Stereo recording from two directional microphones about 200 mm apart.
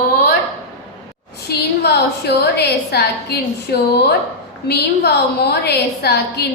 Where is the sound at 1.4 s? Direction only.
55° left (ahead or behind).